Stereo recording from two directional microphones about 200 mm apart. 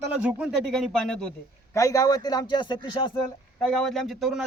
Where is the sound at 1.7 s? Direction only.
15° left (ahead or behind).